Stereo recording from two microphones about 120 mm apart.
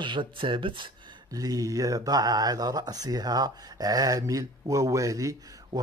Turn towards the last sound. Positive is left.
turn(degrees=-30)  # may be behind; listen again after turning